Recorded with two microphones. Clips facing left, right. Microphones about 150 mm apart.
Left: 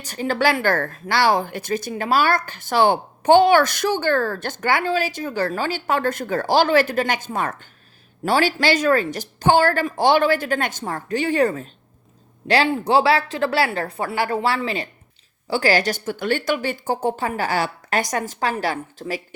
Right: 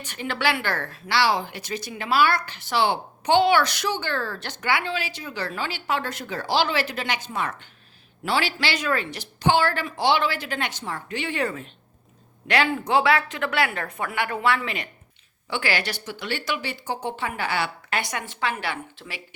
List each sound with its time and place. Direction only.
0.0 s a woman's voice: 40° left (ahead or behind)